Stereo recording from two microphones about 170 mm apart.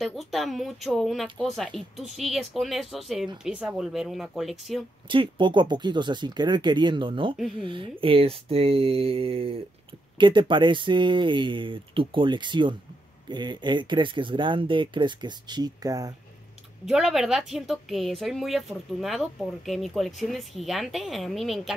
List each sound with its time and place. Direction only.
0.0 s speech: centre (ahead or behind)
5.0 s speech: 30° right (ahead or behind)
16.8 s speech: centre (ahead or behind)